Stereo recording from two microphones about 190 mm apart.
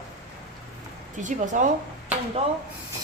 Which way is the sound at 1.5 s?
40° right (ahead or behind).